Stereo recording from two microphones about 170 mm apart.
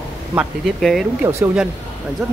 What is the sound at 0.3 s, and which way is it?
Speech, 5° right (ahead or behind).